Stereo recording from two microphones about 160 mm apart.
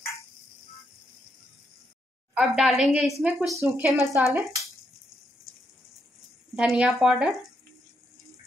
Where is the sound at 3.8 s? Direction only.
5° right (ahead or behind).